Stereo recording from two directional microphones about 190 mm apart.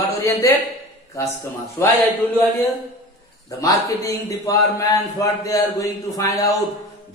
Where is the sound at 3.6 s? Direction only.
20° left (ahead or behind).